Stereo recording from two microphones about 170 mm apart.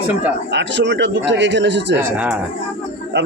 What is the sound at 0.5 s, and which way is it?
Speech, 90° right.